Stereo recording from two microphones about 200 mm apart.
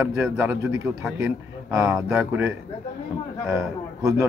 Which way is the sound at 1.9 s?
5° right (ahead or behind).